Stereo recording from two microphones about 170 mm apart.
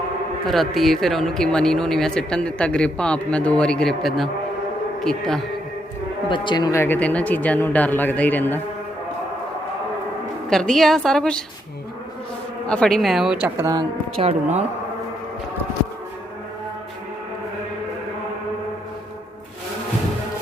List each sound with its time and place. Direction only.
0.4 s a man's voice: centre (ahead or behind)
6.2 s speech: 30° left (ahead or behind)
6.7 s a man's voice: 10° left (ahead or behind)
10.5 s speech: centre (ahead or behind)
12.6 s speech: 5° left (ahead or behind)
14.2 s speech: 40° right (ahead or behind)